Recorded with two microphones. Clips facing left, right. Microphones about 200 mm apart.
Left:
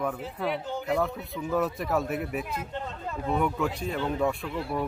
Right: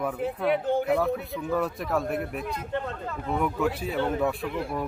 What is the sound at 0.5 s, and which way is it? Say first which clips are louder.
Speech: right 8 dB; 55° right (ahead or behind).